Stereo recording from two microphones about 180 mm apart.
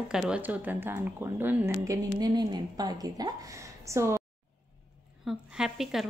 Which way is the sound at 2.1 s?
25° right (ahead or behind).